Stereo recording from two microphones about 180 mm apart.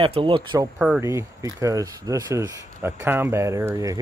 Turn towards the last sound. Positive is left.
turn(degrees=-15)  # may be behind; listen again after turning